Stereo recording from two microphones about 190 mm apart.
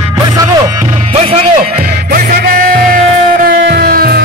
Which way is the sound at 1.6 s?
50° right (ahead or behind).